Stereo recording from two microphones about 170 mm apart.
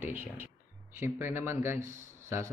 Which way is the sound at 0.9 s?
15° right (ahead or behind).